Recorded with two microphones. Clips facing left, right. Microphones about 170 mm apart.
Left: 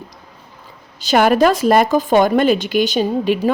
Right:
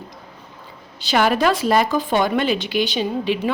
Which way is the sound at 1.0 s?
45° left (ahead or behind).